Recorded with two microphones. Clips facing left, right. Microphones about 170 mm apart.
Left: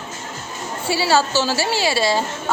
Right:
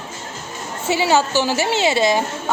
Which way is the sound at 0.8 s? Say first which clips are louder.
Right 1 dB; 20° right (ahead or behind).